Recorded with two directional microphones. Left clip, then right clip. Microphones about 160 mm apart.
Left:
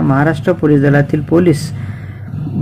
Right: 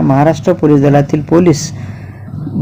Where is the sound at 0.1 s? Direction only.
15° right (ahead or behind).